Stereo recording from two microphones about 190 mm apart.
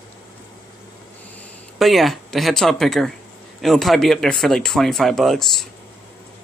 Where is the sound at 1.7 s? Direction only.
Centre (ahead or behind).